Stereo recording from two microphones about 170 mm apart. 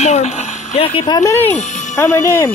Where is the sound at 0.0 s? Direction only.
40° left (ahead or behind).